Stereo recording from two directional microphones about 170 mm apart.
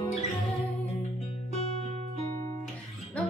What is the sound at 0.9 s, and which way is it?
Music, 40° left (ahead or behind).